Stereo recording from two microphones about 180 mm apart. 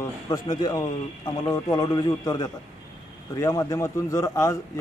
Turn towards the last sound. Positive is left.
turn(degrees=15)  # may be behind; listen again after turning